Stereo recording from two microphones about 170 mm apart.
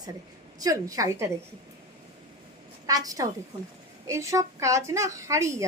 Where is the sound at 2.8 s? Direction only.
20° right (ahead or behind).